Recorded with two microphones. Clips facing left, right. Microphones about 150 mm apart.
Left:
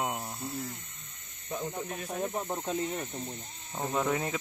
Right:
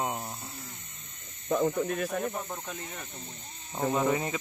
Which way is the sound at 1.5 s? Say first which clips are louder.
Right 9 dB; 80° right.